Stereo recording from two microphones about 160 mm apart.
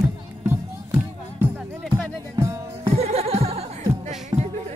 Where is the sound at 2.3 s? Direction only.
15° right (ahead or behind).